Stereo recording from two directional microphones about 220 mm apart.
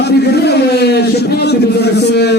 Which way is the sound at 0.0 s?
50° left (ahead or behind).